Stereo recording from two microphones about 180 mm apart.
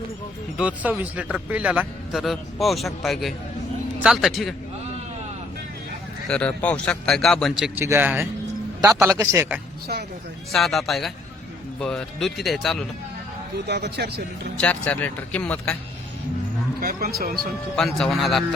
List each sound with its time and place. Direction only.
0.5 s speech: 5° right (ahead or behind)
6.2 s a man's voice: 5° left (ahead or behind); by 9.6 s 15° right (ahead or behind)
10.5 s speech: centre (ahead or behind)
13.7 s speech: 65° right (ahead or behind)
14.6 s speech: 10° left (ahead or behind)
16.8 s speech: 60° right (ahead or behind)
17.7 s speech: centre (ahead or behind)